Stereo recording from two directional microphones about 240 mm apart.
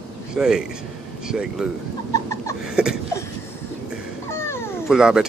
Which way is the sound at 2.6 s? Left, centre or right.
Centre.